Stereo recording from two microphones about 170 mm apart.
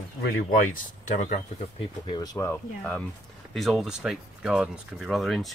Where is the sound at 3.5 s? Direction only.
Centre (ahead or behind).